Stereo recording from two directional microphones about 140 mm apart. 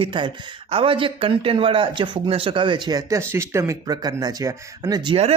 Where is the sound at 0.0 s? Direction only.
35° right (ahead or behind).